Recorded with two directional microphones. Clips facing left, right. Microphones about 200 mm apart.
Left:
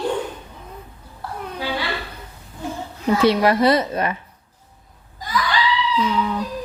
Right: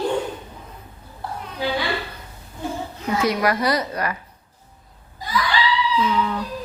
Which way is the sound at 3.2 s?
30° left (ahead or behind).